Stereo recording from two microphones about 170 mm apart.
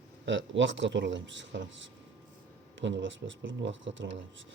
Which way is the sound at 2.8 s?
90° right.